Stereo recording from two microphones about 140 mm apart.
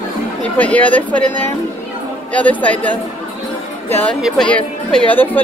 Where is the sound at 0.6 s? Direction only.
10° left (ahead or behind).